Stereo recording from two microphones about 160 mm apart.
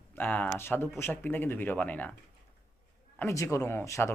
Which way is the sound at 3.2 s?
20° left (ahead or behind).